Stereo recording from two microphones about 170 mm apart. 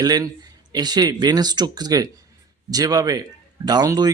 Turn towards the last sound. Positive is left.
turn(degrees=-25)  # may be behind; listen again after turning